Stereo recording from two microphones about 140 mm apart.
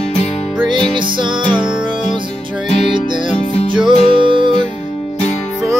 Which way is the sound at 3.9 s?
35° right (ahead or behind).